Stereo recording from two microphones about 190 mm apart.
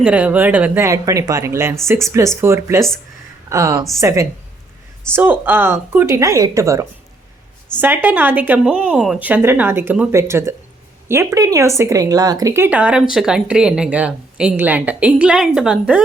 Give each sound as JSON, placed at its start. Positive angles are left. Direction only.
{"t": 0.0, "sound": "speech", "side_deg": -5}